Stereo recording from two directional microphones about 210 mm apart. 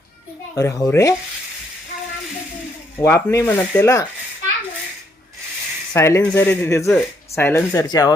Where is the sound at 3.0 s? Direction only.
15° left (ahead or behind).